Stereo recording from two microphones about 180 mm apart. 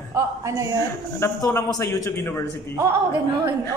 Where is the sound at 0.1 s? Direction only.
15° right (ahead or behind).